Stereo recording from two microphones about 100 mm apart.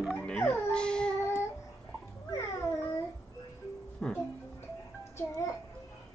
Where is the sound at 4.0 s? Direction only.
5° left (ahead or behind).